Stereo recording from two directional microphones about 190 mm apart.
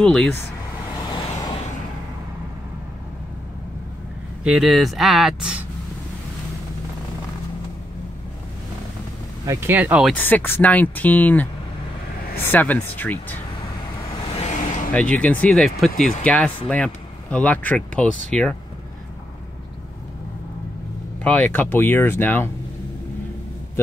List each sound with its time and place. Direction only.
0.0 s speech: 5° left (ahead or behind)
1.1 s vehicle: 25° left (ahead or behind)
4.4 s speech: centre (ahead or behind)
9.5 s speech: 10° right (ahead or behind)
10.1 s speech: 10° left (ahead or behind)
12.4 s speech: 10° left (ahead or behind)
14.3 s vehicle: 35° left (ahead or behind)
14.9 s speech: 5° left (ahead or behind)
21.2 s speech: 5° left (ahead or behind)